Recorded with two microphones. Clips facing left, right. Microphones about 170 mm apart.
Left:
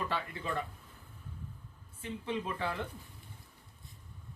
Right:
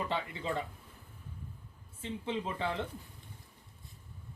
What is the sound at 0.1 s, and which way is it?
Speech, 20° right (ahead or behind).